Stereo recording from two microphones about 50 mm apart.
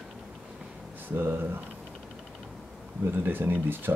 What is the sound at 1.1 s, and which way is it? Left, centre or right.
Speech, right.